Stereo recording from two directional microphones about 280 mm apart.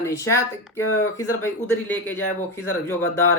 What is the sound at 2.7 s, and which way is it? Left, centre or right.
Speech, centre.